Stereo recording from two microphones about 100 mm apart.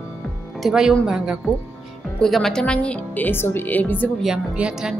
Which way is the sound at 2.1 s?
5° left (ahead or behind).